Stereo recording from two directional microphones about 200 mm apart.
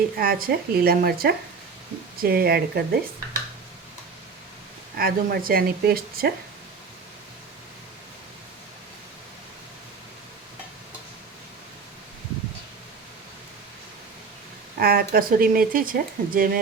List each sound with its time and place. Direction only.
0.2 s speech: 45° right (ahead or behind)
4.9 s speech: 50° right (ahead or behind)
14.8 s speech: 50° right (ahead or behind)